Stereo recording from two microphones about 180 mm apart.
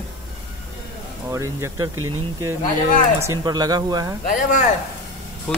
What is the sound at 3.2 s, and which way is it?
Speech, 20° right (ahead or behind).